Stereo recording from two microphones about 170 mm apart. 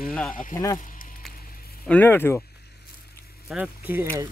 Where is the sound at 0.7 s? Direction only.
50° left (ahead or behind).